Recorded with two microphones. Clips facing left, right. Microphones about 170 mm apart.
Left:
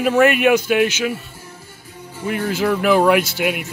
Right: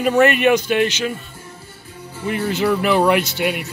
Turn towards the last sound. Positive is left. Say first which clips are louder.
# left 1 dB
turn(degrees=0)  # may be behind; listen again after turning